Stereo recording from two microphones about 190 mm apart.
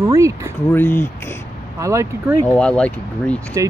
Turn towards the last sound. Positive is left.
turn(degrees=5)  # may be behind; listen again after turning